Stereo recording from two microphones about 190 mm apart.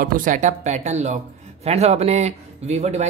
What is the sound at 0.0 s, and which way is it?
Speech, 45° right (ahead or behind).